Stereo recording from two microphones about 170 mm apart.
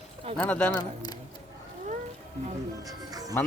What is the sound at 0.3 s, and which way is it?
Speech, 5° left (ahead or behind).